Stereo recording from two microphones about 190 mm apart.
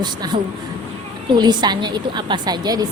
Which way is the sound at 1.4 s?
20° right (ahead or behind).